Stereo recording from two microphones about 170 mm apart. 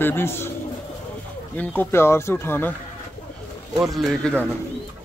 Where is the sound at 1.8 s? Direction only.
15° left (ahead or behind).